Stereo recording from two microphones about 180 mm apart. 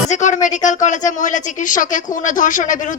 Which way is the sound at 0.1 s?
45° left (ahead or behind).